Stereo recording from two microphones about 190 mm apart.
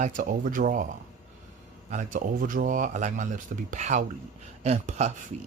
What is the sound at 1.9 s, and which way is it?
Speech, 40° right (ahead or behind).